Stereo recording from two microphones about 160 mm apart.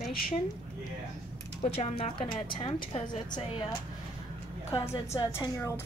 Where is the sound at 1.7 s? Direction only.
40° left (ahead or behind).